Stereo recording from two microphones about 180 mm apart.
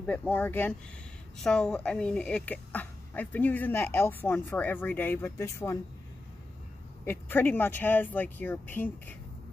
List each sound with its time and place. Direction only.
0.3 s speech: 10° left (ahead or behind)
7.1 s speech: 10° left (ahead or behind)